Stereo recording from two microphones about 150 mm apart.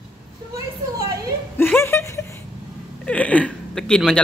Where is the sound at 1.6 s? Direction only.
15° left (ahead or behind).